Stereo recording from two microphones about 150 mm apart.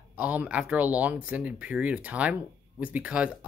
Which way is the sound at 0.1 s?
10° right (ahead or behind).